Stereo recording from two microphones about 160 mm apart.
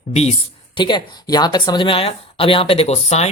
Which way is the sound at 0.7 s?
30° left (ahead or behind).